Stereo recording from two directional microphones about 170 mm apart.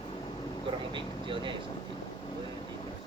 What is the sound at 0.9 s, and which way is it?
Vehicle, 30° right (ahead or behind).